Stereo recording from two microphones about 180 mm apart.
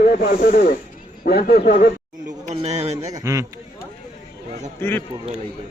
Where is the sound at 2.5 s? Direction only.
35° right (ahead or behind).